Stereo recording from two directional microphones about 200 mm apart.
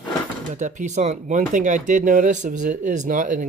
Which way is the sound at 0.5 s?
35° right (ahead or behind).